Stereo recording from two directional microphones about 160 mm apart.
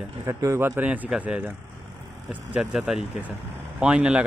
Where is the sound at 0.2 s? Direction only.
20° right (ahead or behind).